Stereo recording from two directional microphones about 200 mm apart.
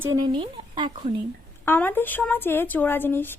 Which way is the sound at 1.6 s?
10° left (ahead or behind).